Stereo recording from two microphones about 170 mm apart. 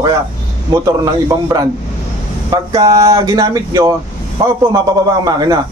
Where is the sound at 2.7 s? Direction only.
20° right (ahead or behind).